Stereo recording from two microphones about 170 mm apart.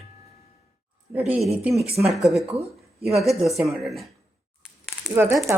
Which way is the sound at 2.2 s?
Centre (ahead or behind).